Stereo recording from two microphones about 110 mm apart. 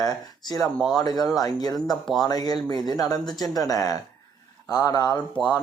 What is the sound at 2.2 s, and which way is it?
Speech, 35° left (ahead or behind).